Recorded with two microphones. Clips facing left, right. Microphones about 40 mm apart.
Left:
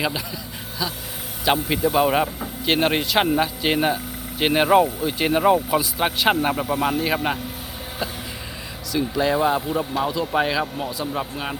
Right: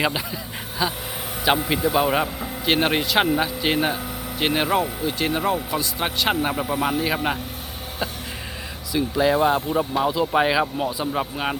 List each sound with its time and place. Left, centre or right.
0.8 s speech: right
1.5 s speech: centre
1.9 s speech: centre
8.9 s speech: centre